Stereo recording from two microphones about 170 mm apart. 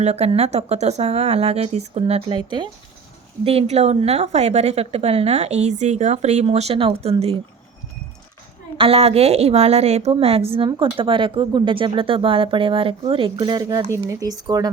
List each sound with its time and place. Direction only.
0.0 s speech: 40° right (ahead or behind)
8.8 s speech: 35° right (ahead or behind)